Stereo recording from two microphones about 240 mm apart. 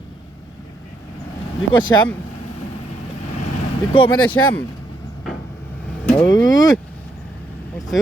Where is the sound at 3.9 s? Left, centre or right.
Left.